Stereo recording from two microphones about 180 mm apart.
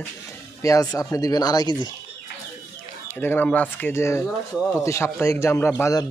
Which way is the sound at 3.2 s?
10° left (ahead or behind).